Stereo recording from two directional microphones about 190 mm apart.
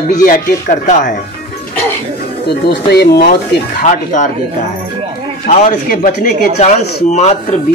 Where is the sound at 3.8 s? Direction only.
40° left (ahead or behind).